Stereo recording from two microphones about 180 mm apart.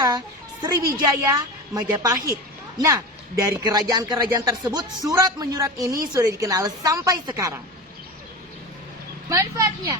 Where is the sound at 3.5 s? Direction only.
20° right (ahead or behind).